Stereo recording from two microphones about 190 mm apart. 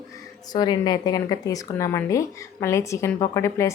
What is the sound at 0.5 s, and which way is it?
Speech, 20° left (ahead or behind).